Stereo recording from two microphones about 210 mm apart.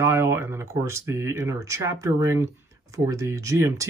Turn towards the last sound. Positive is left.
turn(degrees=-15)  # may be behind; listen again after turning